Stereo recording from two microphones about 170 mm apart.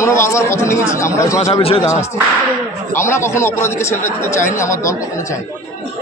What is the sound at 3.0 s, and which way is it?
A man's voice, 15° left (ahead or behind).